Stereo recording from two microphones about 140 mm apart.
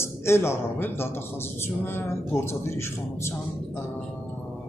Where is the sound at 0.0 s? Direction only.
20° left (ahead or behind).